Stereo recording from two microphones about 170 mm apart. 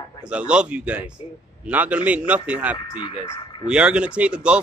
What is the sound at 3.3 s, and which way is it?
Speech, 30° left (ahead or behind).